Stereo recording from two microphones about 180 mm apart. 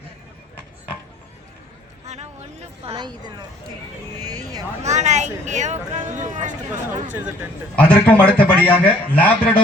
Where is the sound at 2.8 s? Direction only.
30° right (ahead or behind).